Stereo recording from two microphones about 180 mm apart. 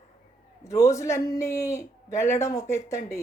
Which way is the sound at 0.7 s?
15° left (ahead or behind).